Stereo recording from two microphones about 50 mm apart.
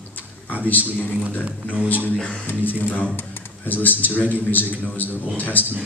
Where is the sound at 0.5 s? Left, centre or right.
Left.